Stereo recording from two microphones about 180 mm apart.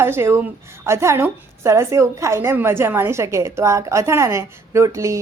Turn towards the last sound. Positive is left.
turn(degrees=-15)  # may be behind; listen again after turning